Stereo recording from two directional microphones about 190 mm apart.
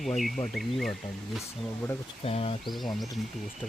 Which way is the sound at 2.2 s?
30° left (ahead or behind).